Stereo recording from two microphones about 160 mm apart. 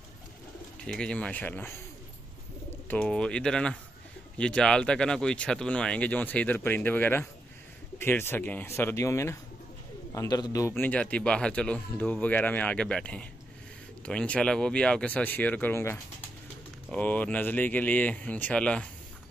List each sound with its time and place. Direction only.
0.8 s speech: 5° left (ahead or behind)
2.9 s speech: 5° left (ahead or behind); by 10.7 s 20° left (ahead or behind)
10.7 s speech: 10° left (ahead or behind)